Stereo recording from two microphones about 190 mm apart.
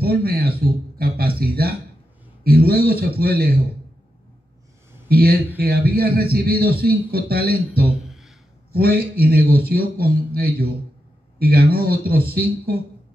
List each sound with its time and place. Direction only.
0.0 s a sound: 55° right (ahead or behind)
2.4 s a man's voice: 55° right (ahead or behind)
5.0 s a man's voice: 55° right (ahead or behind)